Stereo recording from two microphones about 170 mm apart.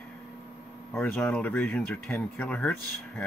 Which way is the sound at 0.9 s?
5° left (ahead or behind).